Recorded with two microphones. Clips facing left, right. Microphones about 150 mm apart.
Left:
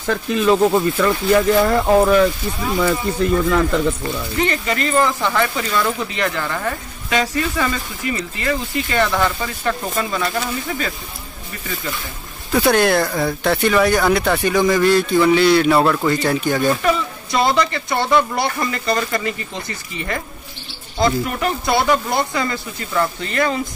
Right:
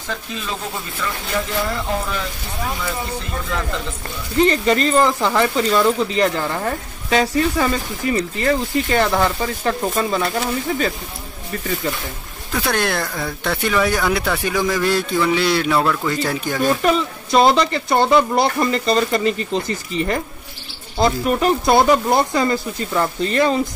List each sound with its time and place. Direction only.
0.0 s speech: 60° left (ahead or behind)
4.4 s speech: 35° right (ahead or behind)
12.5 s speech: 5° left (ahead or behind)
17.4 s speech: 30° right (ahead or behind)
21.0 s speech: 30° right (ahead or behind)